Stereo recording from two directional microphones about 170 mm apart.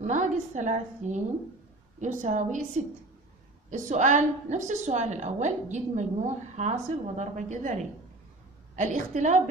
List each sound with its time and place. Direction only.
0.0 s a woman's voice: 45° right (ahead or behind)